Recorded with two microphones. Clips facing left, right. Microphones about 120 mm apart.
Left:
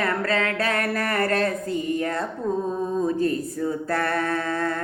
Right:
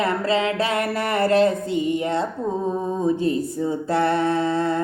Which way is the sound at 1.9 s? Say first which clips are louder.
Right 3 dB; 25° right (ahead or behind).